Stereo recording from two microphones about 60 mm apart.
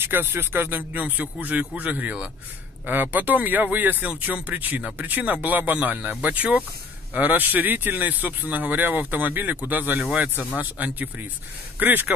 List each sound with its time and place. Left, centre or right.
0.0 s speech: right